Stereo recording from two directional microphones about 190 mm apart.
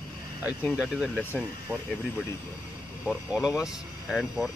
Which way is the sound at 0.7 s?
5° right (ahead or behind).